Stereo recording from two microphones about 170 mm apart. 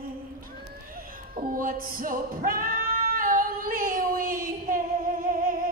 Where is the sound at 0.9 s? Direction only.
55° right (ahead or behind).